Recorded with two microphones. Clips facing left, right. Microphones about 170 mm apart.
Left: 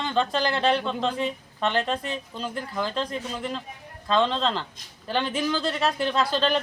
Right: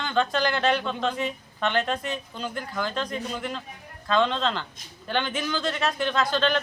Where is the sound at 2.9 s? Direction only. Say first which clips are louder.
Left 1 dB; 30° left (ahead or behind).